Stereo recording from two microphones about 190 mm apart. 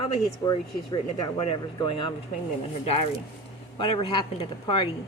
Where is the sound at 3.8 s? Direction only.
30° left (ahead or behind).